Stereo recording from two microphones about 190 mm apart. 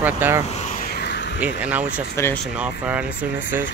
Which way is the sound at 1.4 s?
5° right (ahead or behind).